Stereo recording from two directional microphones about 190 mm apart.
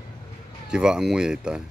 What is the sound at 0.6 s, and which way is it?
Speech, 5° right (ahead or behind).